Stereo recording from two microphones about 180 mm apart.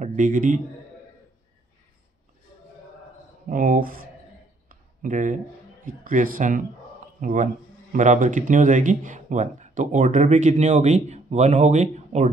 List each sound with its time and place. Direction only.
0.0 s a man's voice: 45° right (ahead or behind)
3.4 s speech: 50° right (ahead or behind)
4.6 s a sound: 45° right (ahead or behind)
5.9 s speech: 50° right (ahead or behind)